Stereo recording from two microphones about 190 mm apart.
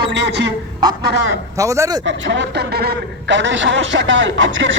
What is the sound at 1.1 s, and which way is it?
Speech, 75° right (ahead or behind).